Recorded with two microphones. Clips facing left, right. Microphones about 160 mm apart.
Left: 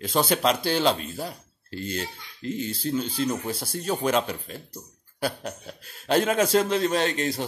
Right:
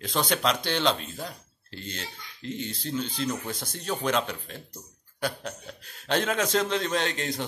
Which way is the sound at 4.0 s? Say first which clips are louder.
Left 2 dB; 5° left (ahead or behind).